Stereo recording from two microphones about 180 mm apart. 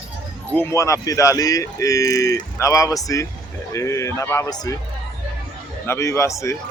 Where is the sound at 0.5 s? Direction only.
15° left (ahead or behind).